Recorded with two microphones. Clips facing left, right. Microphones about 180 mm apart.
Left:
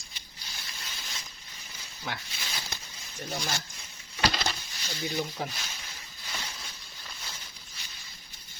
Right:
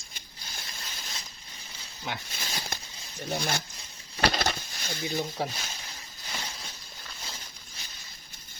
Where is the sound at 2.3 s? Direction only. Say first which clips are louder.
Right 3 dB; 45° right (ahead or behind).